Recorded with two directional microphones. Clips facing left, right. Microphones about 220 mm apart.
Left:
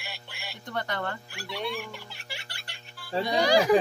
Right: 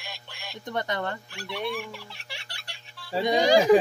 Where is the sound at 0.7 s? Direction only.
20° right (ahead or behind).